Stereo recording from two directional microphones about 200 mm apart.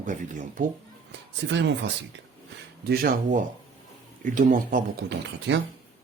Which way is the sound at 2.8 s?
50° right (ahead or behind).